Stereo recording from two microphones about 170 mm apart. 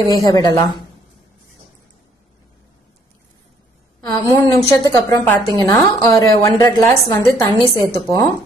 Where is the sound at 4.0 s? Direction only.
20° left (ahead or behind).